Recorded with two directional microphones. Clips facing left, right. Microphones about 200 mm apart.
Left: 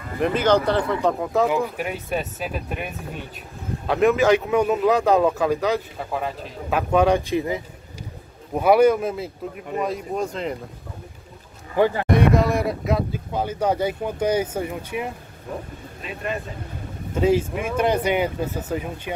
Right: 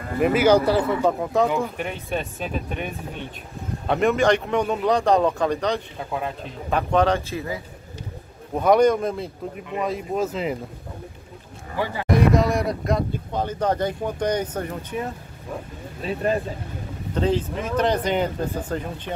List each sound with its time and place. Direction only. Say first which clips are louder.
0.2 s speech: right 2 dB; 5° right (ahead or behind); by 7.6 s 20° left (ahead or behind)
8.5 s speech: left 1 dB; 5° left (ahead or behind)
11.7 s speech: left 7 dB; 50° left (ahead or behind)
12.1 s speech: even; centre (ahead or behind)
16.0 s speech: right 6 dB; 35° right (ahead or behind)
17.1 s speech: left 3 dB; 10° left (ahead or behind)